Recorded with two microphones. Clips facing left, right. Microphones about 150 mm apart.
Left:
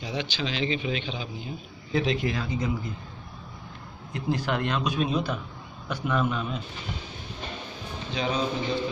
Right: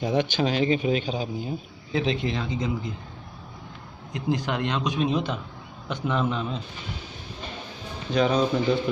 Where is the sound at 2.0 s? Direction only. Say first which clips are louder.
Even; 25° right (ahead or behind).